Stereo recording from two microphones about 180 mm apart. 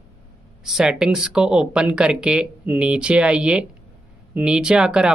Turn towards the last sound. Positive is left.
turn(degrees=-5)  # may be behind; listen again after turning